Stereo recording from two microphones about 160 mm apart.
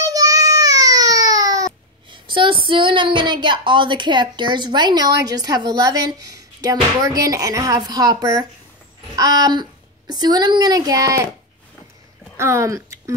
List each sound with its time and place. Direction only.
0.0 s baby cry: 20° right (ahead or behind)
9.1 s a woman's voice: 25° right (ahead or behind)
12.4 s speech: 15° right (ahead or behind)